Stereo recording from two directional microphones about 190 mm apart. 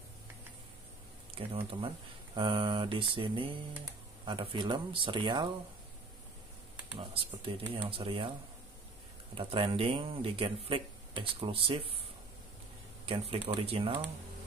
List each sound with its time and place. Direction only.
1.5 s speech: 30° right (ahead or behind)
7.0 s speech: 30° right (ahead or behind)
9.4 s speech: 30° right (ahead or behind)
13.0 s speech: 30° right (ahead or behind)